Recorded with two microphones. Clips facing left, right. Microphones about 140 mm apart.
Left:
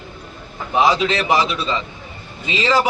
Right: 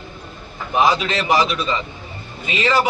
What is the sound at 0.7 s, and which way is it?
Speech, 20° left (ahead or behind).